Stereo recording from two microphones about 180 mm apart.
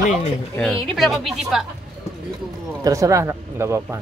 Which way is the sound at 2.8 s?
20° right (ahead or behind).